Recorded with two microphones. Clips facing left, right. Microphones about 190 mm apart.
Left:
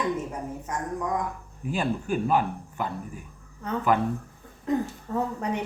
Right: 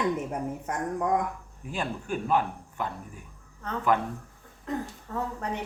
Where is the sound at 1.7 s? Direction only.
5° left (ahead or behind).